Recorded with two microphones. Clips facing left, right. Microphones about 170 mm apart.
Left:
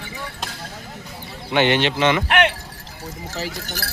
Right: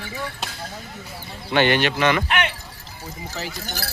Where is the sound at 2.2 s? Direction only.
65° left (ahead or behind).